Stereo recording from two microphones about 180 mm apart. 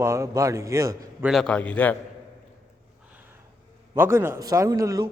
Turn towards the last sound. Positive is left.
turn(degrees=-20)  # may be behind; listen again after turning